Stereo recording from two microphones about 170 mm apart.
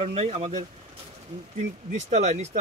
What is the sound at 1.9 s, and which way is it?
Speech, 45° right (ahead or behind).